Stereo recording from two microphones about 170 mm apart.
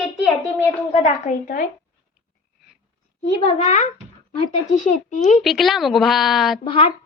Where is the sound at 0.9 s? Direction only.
45° left (ahead or behind).